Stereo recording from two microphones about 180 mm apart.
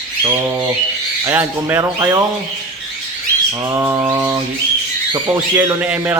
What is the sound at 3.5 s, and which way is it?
Speech, 15° right (ahead or behind).